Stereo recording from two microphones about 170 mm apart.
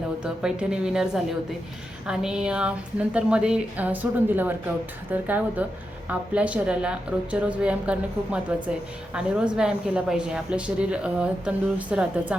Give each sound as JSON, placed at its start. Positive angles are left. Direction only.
{"t": 0.2, "sound": "a woman's voice", "side_deg": -5}